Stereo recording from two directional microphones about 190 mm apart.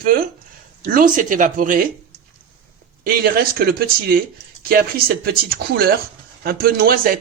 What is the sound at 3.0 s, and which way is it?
Speech, 55° right (ahead or behind).